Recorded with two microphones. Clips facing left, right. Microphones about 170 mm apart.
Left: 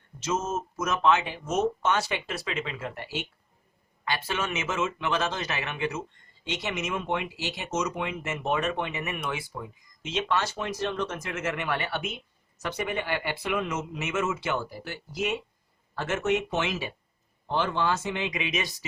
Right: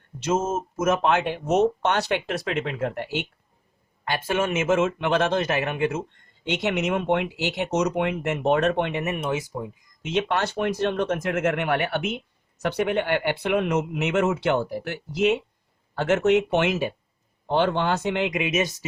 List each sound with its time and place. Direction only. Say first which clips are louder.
0.2 s speech: right 5 dB; 50° right (ahead or behind)
4.0 s speech: right 6 dB; 50° right (ahead or behind)
6.4 s speech: right 7 dB; 65° right (ahead or behind)
9.5 s speech: right 6 dB; 15° right (ahead or behind)
10.0 s speech: right 4 dB; 60° right (ahead or behind)
17.5 s speech: right 5 dB; 65° right (ahead or behind)
18.4 s speech: right 7 dB; 45° right (ahead or behind)